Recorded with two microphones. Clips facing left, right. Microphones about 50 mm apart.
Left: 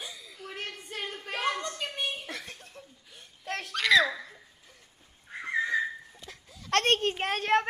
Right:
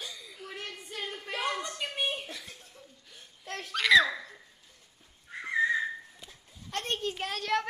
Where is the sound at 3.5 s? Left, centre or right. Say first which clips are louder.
Left 4 dB; left.